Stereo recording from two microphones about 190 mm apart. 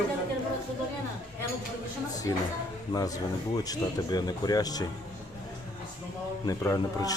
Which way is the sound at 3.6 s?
20° left (ahead or behind).